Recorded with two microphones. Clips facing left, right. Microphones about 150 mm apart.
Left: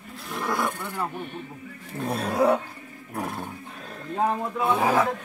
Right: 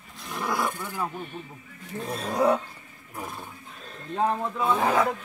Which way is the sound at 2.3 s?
5° left (ahead or behind).